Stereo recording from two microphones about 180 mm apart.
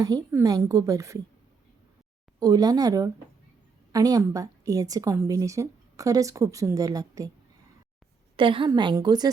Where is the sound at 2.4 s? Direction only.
20° right (ahead or behind).